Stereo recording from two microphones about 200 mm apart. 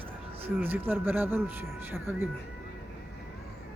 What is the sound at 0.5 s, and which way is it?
Speech, 10° right (ahead or behind).